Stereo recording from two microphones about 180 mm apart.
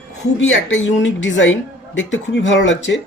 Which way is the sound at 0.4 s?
90° left.